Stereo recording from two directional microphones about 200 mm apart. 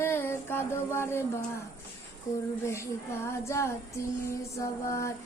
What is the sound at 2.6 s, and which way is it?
Female singing, 15° left (ahead or behind).